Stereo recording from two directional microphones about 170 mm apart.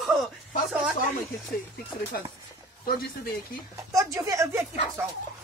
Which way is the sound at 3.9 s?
20° right (ahead or behind).